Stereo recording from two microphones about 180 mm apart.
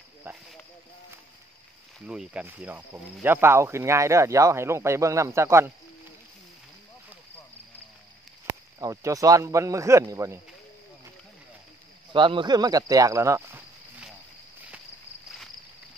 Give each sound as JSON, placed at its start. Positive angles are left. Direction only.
{"t": 2.0, "sound": "speech", "side_deg": -5}
{"t": 8.5, "sound": "speech", "side_deg": -20}
{"t": 12.1, "sound": "speech", "side_deg": -25}